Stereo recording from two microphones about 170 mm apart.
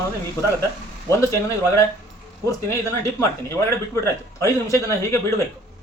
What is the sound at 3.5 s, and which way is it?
Speech, 20° left (ahead or behind).